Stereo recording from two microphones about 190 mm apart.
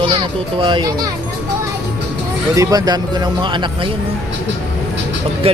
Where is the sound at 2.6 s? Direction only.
20° right (ahead or behind).